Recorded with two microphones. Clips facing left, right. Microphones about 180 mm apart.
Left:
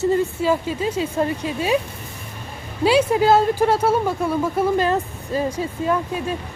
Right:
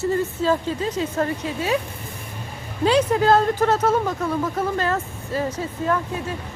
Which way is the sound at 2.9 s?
10° left (ahead or behind).